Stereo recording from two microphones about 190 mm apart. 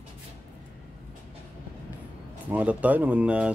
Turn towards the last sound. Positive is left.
turn(degrees=-5)  # may be behind; listen again after turning